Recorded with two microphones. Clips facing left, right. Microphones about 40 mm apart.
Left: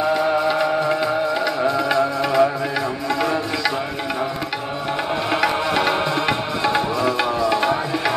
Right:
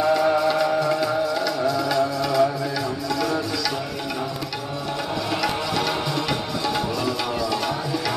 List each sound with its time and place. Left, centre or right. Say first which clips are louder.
0.0 s music: even; centre
5.3 s music: left 6 dB; left